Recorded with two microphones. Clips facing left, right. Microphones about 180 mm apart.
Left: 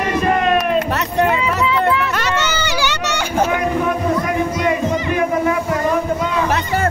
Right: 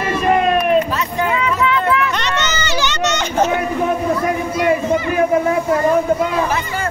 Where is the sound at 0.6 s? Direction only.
70° left (ahead or behind).